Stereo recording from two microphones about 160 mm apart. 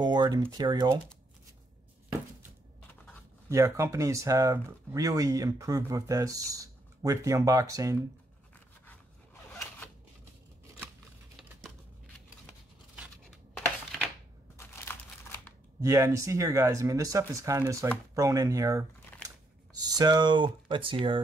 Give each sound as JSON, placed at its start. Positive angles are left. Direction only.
{"t": 0.0, "sound": "a sound", "side_deg": -25}
{"t": 0.5, "sound": "speech", "side_deg": -25}
{"t": 3.4, "sound": "speech", "side_deg": -20}
{"t": 12.9, "sound": "scissors", "side_deg": -5}
{"t": 14.9, "sound": "crumpling", "side_deg": 15}
{"t": 15.8, "sound": "speech", "side_deg": -20}